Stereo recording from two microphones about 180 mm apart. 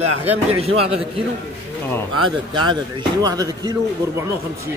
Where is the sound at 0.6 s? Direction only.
35° right (ahead or behind).